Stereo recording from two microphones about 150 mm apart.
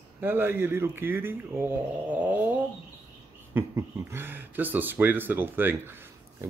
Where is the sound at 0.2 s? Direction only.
15° right (ahead or behind).